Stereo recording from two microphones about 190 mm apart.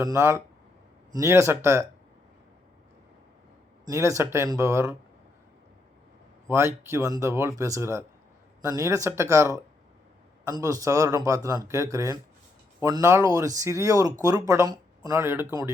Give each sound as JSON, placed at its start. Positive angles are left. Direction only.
{"t": 0.0, "sound": "speech", "side_deg": -15}
{"t": 3.9, "sound": "speech", "side_deg": -15}
{"t": 6.9, "sound": "speech", "side_deg": -15}